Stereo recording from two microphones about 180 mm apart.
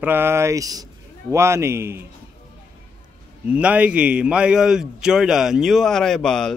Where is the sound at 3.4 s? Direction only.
10° right (ahead or behind).